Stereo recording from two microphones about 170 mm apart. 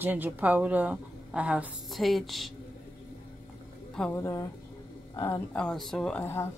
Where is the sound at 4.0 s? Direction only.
15° left (ahead or behind).